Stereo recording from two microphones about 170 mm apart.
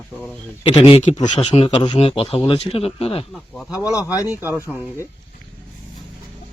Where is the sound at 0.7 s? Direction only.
40° left (ahead or behind).